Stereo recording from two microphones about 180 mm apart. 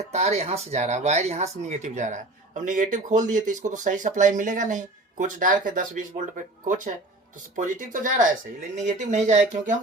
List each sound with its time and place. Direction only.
0.0 s speech: 35° right (ahead or behind)